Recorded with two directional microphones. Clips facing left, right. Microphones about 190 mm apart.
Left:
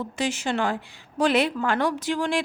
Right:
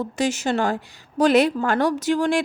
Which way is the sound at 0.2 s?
40° right (ahead or behind).